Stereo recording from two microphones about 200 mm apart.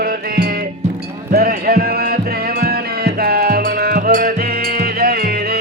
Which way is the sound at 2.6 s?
50° right (ahead or behind).